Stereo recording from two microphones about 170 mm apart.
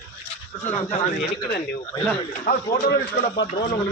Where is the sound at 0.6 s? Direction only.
45° left (ahead or behind).